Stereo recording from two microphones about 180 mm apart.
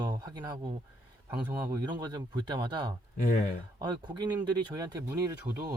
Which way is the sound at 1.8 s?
25° right (ahead or behind).